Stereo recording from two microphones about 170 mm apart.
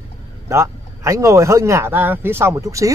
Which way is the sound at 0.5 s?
15° right (ahead or behind).